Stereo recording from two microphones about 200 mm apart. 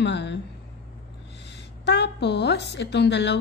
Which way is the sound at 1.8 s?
60° left (ahead or behind).